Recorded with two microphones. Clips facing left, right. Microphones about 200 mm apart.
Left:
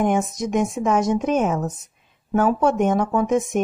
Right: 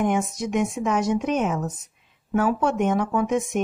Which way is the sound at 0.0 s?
45° left (ahead or behind).